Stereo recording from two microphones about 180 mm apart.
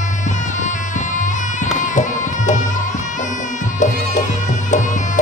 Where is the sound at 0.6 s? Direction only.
45° left (ahead or behind).